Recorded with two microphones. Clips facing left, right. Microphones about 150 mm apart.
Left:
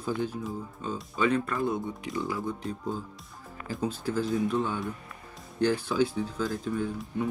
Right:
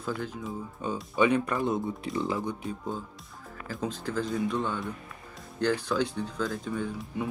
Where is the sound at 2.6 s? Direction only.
5° right (ahead or behind).